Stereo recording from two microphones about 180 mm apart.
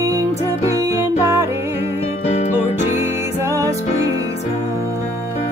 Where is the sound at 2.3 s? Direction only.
35° left (ahead or behind).